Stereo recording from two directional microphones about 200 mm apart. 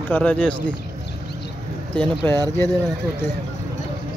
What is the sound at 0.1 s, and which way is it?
Speech, 10° left (ahead or behind).